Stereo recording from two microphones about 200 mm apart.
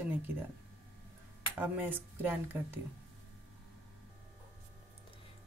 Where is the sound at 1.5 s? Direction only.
10° right (ahead or behind).